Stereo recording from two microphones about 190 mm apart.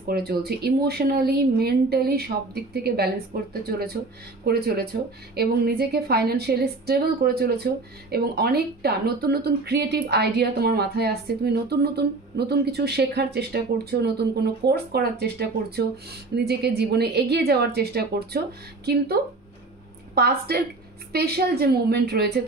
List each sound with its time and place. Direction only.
0.0 s a woman's voice: 55° right (ahead or behind)